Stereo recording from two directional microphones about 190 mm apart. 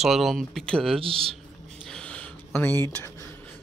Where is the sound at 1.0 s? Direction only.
30° right (ahead or behind).